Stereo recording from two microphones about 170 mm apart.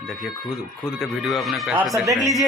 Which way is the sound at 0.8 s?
Centre (ahead or behind).